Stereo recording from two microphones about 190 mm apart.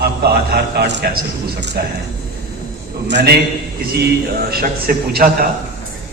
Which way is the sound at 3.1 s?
60° right (ahead or behind).